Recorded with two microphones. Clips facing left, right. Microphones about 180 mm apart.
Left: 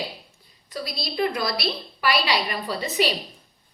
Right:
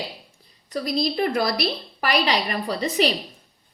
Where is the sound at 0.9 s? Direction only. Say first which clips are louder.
Right 3 dB; 40° right (ahead or behind).